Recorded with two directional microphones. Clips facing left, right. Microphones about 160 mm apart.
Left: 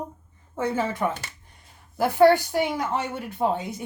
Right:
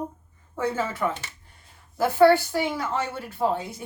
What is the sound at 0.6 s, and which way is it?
A woman's voice, 20° left (ahead or behind).